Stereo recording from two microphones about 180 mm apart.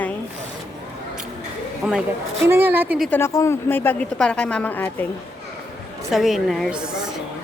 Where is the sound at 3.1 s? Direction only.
15° left (ahead or behind).